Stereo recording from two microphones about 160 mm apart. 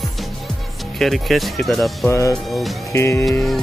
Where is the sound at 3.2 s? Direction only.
Centre (ahead or behind).